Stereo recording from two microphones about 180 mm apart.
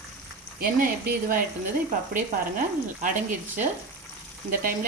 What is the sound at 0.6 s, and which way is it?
Speech, 55° right (ahead or behind).